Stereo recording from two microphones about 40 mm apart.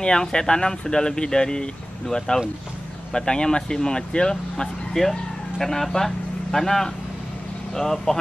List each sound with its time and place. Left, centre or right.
0.0 s speech: centre
5.0 s speech: centre
5.6 s speech: centre